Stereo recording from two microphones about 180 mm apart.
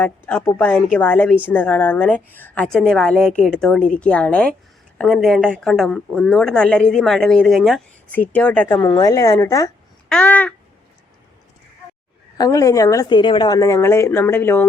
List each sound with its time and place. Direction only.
0.0 s a woman's voice: 10° left (ahead or behind)
8.8 s a woman's voice: 20° left (ahead or behind)
12.4 s a woman's voice: 20° left (ahead or behind)